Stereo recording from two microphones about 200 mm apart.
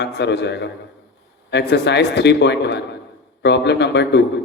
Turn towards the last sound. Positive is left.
turn(degrees=60)  # may be behind; listen again after turning